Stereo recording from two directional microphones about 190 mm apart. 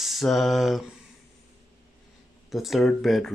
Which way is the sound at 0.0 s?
Centre (ahead or behind).